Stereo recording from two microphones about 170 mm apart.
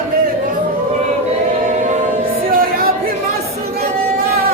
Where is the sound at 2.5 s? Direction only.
60° right (ahead or behind).